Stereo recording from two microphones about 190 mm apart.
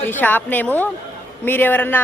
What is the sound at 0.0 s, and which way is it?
A man's voice, 10° left (ahead or behind).